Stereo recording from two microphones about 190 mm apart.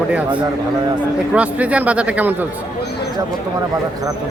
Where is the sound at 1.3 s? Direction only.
5° right (ahead or behind).